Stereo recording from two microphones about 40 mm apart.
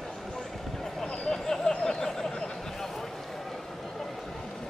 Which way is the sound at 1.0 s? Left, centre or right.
Centre.